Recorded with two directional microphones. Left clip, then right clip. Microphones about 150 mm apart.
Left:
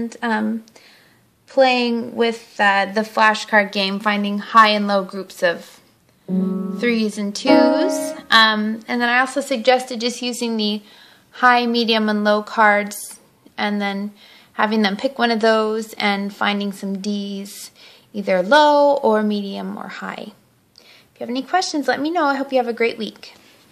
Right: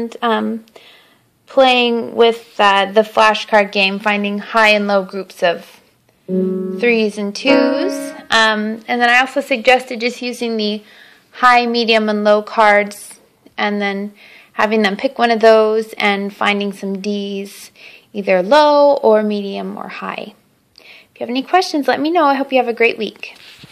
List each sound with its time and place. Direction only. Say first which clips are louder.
0.1 s a woman's voice: right 5 dB; 20° right (ahead or behind)
6.8 s a woman's voice: right 6 dB; 10° right (ahead or behind)